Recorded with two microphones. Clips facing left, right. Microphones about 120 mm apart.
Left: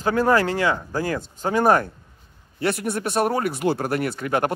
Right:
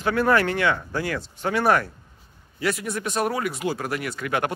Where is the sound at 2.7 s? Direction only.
55° left (ahead or behind); by 4.5 s 35° left (ahead or behind).